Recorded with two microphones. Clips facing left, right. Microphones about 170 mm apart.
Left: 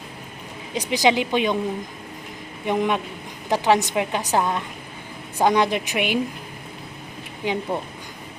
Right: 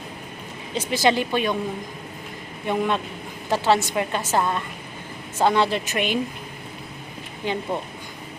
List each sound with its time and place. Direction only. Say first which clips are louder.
0.7 s a woman's voice: left 1 dB; 15° left (ahead or behind)
2.6 s a woman's voice: left 1 dB; 15° left (ahead or behind)
7.4 s a woman's voice: left 1 dB; 10° left (ahead or behind)